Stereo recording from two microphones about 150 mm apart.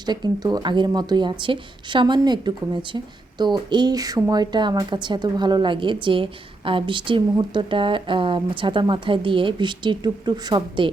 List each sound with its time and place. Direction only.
0.0 s speech: 30° right (ahead or behind)